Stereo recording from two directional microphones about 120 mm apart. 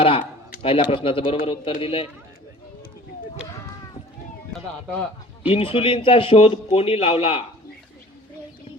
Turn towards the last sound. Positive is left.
turn(degrees=55)  # may be behind; listen again after turning